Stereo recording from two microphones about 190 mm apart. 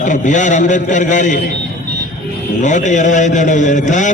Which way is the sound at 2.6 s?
40° left (ahead or behind).